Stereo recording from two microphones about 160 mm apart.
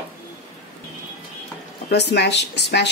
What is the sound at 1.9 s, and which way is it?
Speech, 90° left.